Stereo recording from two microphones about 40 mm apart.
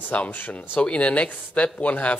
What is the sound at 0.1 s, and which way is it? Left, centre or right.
A man's voice, left.